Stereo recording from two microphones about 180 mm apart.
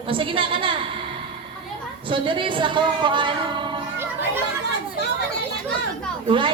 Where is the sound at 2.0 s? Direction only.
30° right (ahead or behind).